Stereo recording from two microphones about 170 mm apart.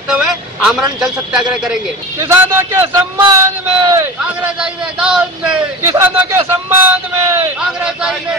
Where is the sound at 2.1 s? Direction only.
15° right (ahead or behind).